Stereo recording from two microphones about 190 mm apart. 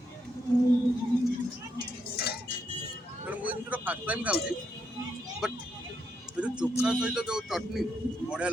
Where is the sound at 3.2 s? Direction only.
10° right (ahead or behind).